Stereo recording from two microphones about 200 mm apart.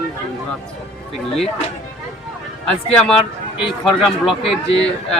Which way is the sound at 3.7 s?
Centre (ahead or behind).